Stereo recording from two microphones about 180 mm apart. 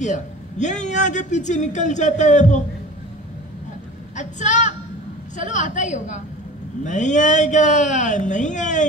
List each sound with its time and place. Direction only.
0.0 s a man's voice: 40° left (ahead or behind)
4.2 s a man's voice: 40° left (ahead or behind)